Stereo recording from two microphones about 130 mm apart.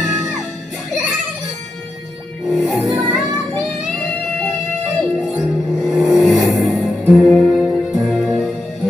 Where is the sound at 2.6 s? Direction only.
Centre (ahead or behind).